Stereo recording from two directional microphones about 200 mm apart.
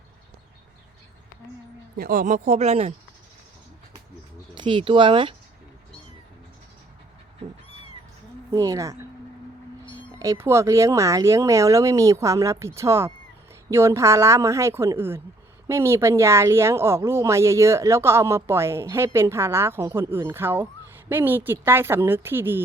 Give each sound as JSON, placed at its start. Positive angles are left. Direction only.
{"t": 2.0, "sound": "speech", "side_deg": -45}
{"t": 4.5, "sound": "speech", "side_deg": -25}
{"t": 8.5, "sound": "speech", "side_deg": -15}